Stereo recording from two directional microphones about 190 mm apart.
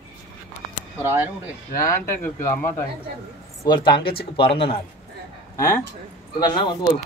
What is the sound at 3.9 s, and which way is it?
Speech, 55° left (ahead or behind).